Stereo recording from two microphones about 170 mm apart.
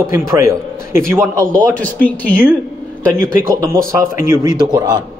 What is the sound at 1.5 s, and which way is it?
Speech, 5° left (ahead or behind).